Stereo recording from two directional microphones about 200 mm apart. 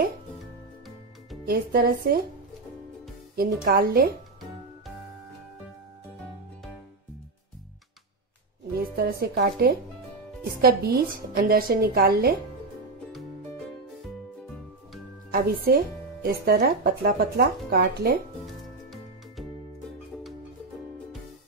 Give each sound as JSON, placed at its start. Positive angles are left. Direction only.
{"t": 1.4, "sound": "speech", "side_deg": -50}
{"t": 3.3, "sound": "speech", "side_deg": -50}
{"t": 8.7, "sound": "speech", "side_deg": -50}
{"t": 15.3, "sound": "speech", "side_deg": -50}
{"t": 18.4, "sound": "music", "side_deg": 0}